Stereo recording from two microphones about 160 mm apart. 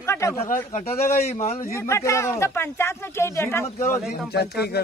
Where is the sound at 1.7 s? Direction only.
20° left (ahead or behind).